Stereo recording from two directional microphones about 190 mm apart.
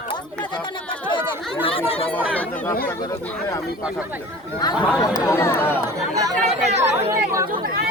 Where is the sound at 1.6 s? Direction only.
30° left (ahead or behind).